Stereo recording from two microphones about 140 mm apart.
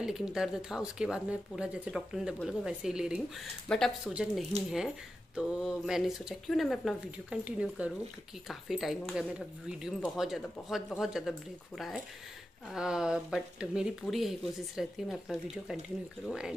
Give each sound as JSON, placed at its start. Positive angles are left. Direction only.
{"t": 0.0, "sound": "speech", "side_deg": -5}